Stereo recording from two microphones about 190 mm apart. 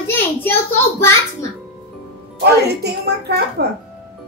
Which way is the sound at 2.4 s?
60° right (ahead or behind).